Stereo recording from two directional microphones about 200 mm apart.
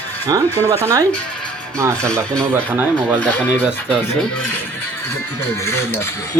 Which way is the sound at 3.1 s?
5° left (ahead or behind).